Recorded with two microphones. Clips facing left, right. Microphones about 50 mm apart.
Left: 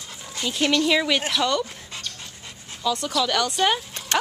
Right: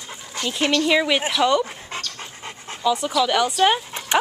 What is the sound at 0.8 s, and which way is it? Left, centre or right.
Speech, centre.